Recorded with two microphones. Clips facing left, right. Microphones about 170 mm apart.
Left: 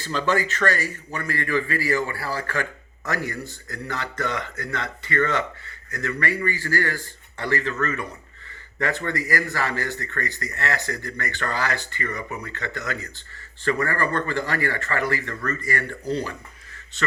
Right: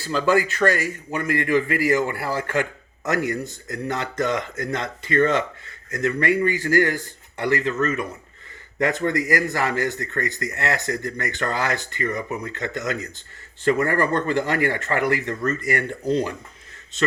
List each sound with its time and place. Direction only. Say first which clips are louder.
0.0 s a man's voice: right 4 dB; 10° right (ahead or behind)